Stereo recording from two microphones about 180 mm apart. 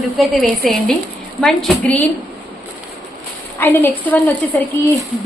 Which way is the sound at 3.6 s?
10° left (ahead or behind).